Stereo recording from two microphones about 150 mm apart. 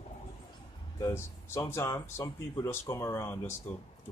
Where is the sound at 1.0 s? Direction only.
20° left (ahead or behind).